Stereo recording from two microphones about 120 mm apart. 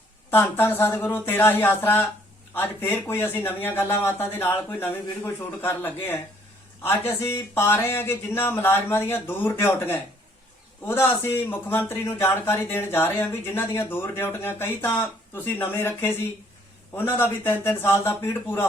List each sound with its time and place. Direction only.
0.3 s speech: 20° left (ahead or behind)